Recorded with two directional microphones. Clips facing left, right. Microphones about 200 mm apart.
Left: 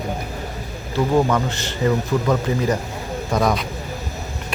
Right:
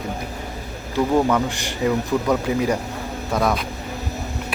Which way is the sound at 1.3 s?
10° right (ahead or behind).